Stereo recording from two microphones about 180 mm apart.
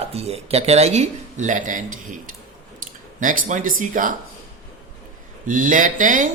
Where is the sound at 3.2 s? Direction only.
45° right (ahead or behind).